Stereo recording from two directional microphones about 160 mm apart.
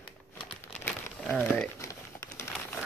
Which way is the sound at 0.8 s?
5° left (ahead or behind).